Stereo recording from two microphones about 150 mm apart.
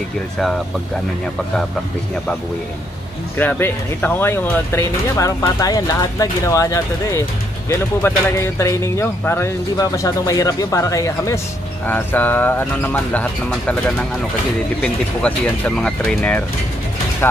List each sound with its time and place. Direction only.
3.3 s speech: 15° left (ahead or behind)